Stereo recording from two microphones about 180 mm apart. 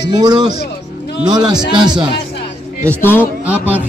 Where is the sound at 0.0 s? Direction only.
20° right (ahead or behind).